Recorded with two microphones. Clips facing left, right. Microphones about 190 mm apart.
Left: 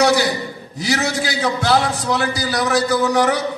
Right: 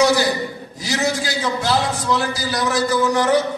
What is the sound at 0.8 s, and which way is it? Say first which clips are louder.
A man's voice: left 1 dB; 65° left (ahead or behind).